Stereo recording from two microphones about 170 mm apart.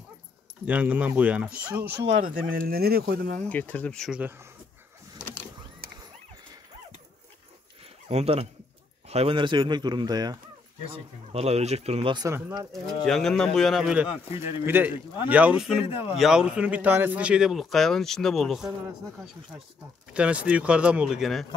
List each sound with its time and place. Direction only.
0.7 s speech: 10° right (ahead or behind)
1.9 s speech: 85° right
2.4 s speech: 60° right (ahead or behind)
3.4 s speech: 10° left (ahead or behind)
4.2 s speech: 15° right (ahead or behind)
8.1 s speech: 35° right (ahead or behind)
11.3 s speech: 40° right (ahead or behind)
12.3 s speech: 15° right (ahead or behind)
12.8 s speech: centre (ahead or behind)
15.8 s speech: 35° left (ahead or behind)
16.2 s speech: 5° right (ahead or behind)
20.1 s speech: 5° right (ahead or behind)